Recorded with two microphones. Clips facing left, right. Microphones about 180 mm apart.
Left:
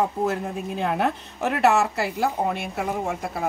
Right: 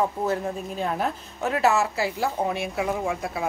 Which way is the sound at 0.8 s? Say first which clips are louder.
Left 4 dB; 70° left (ahead or behind).